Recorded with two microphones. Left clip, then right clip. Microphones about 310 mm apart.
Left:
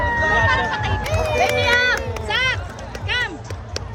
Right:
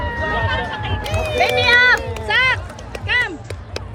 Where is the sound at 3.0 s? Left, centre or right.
Right.